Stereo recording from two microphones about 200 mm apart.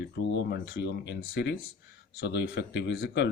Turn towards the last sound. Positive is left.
turn(degrees=55)  # may be behind; listen again after turning